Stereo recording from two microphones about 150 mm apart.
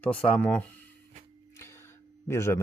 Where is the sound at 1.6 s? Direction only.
15° left (ahead or behind).